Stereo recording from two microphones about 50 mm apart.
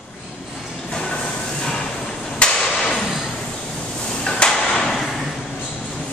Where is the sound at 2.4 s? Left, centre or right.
Centre.